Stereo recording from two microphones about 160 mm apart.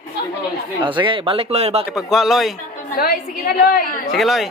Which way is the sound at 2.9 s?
65° left (ahead or behind).